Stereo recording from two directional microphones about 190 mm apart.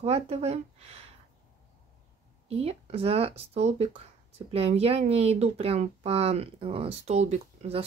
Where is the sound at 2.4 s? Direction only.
30° right (ahead or behind).